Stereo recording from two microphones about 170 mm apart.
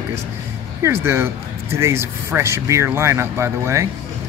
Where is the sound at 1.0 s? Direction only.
15° right (ahead or behind).